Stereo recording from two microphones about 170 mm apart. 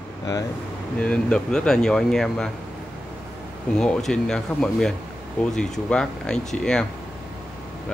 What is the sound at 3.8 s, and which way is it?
Speech, 5° left (ahead or behind).